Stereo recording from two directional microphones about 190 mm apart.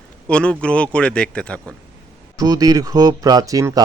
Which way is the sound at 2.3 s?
20° right (ahead or behind).